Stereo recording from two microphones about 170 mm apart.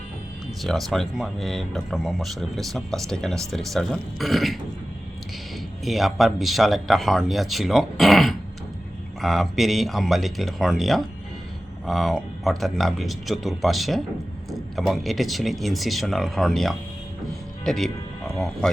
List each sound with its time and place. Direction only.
0.6 s speech: centre (ahead or behind)
5.8 s speech: centre (ahead or behind)